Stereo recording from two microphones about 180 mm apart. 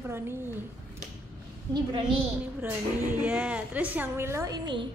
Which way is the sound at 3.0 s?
10° right (ahead or behind).